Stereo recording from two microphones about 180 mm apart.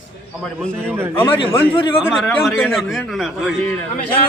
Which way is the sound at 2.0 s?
Centre (ahead or behind).